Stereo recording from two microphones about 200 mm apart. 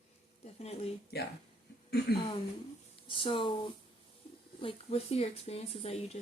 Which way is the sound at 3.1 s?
25° left (ahead or behind).